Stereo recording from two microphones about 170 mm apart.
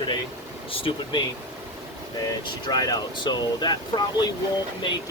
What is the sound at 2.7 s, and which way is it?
Speech, 20° left (ahead or behind).